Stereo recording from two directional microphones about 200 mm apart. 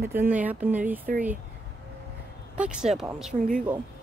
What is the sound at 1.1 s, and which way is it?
Speech, 45° right (ahead or behind).